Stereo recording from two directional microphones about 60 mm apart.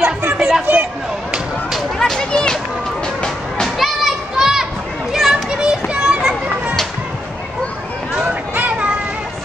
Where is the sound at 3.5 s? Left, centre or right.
Centre.